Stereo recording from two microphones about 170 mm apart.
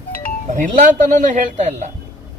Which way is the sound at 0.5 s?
50° right (ahead or behind).